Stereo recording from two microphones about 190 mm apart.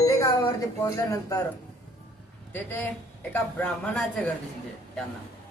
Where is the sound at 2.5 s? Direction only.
10° left (ahead or behind).